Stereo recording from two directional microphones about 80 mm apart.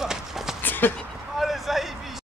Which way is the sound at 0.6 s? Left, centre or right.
Left.